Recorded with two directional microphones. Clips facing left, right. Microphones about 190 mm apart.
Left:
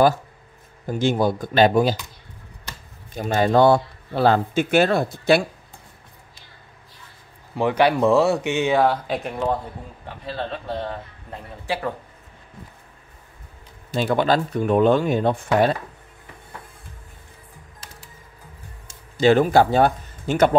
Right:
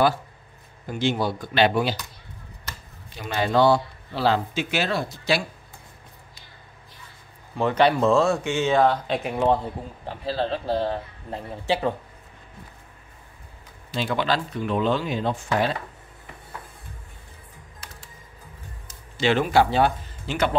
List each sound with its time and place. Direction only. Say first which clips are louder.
0.8 s speech: left 4 dB; 45° left (ahead or behind)
3.1 s speech: left 5 dB; 45° left (ahead or behind)
7.5 s speech: left 1 dB; 10° left (ahead or behind)
10.0 s a man's voice: right 3 dB; 30° right (ahead or behind)
13.9 s speech: left 5 dB; 45° left (ahead or behind)
19.1 s speech: left 5 dB; 40° left (ahead or behind)